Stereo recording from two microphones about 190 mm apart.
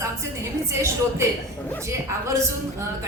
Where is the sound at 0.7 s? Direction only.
15° right (ahead or behind).